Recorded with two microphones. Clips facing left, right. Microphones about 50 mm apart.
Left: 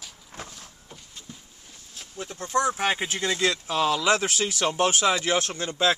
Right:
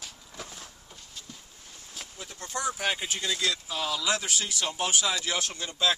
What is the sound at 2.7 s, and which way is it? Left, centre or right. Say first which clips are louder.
Speech: left 4 dB; left.